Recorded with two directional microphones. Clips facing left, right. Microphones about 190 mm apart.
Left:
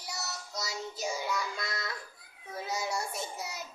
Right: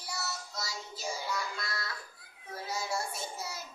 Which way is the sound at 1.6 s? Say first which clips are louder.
Left 2 dB; 20° left (ahead or behind).